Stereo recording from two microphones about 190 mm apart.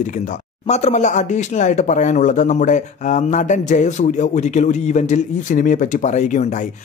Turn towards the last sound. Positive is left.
turn(degrees=40)  # may be behind; listen again after turning